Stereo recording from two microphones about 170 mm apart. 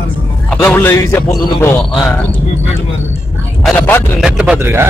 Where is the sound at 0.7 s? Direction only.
10° left (ahead or behind).